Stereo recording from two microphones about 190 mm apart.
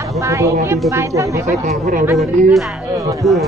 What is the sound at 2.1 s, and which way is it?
Speech, centre (ahead or behind).